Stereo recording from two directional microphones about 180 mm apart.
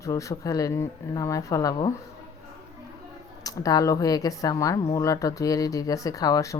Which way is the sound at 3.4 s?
20° left (ahead or behind).